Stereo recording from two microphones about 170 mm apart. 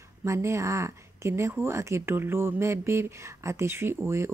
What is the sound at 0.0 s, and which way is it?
Speech, 15° right (ahead or behind).